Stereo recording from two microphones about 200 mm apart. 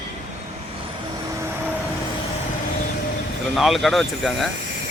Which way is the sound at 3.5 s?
Centre (ahead or behind).